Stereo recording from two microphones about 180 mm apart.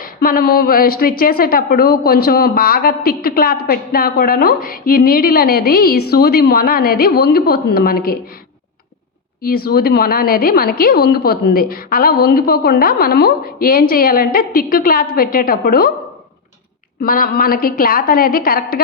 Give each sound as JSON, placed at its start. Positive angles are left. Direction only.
{"t": 0.0, "sound": "a woman's voice", "side_deg": 55}
{"t": 9.4, "sound": "a woman's voice", "side_deg": 55}
{"t": 17.0, "sound": "a woman's voice", "side_deg": 55}